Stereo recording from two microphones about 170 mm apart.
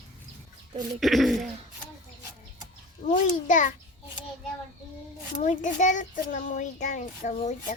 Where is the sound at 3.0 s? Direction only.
50° left (ahead or behind).